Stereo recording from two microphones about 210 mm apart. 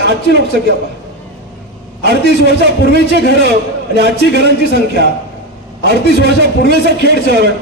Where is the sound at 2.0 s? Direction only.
50° right (ahead or behind).